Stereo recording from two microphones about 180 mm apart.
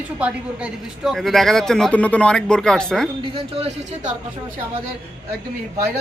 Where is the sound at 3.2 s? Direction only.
30° right (ahead or behind).